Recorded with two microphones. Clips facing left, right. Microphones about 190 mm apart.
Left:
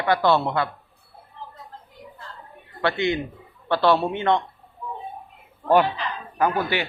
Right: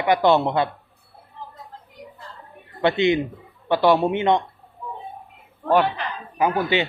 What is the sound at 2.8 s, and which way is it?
A man's voice, 20° right (ahead or behind).